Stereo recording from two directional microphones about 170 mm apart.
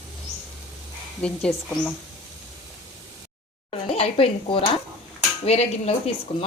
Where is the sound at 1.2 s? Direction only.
5° left (ahead or behind).